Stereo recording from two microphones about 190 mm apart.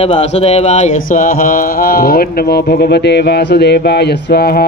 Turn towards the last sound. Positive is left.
turn(degrees=55)  # may be behind; listen again after turning